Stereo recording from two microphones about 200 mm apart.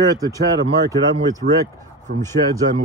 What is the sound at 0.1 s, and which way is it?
Speech, 15° right (ahead or behind).